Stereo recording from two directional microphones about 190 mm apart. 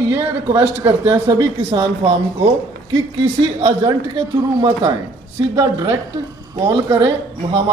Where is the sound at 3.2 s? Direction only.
20° right (ahead or behind).